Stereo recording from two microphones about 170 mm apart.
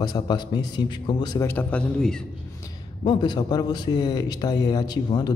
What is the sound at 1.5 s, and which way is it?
Speech, 10° left (ahead or behind).